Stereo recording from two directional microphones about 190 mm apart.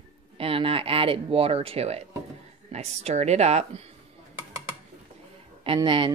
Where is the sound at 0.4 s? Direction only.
30° right (ahead or behind).